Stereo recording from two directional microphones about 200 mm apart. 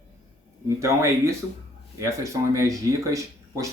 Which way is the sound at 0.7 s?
15° right (ahead or behind).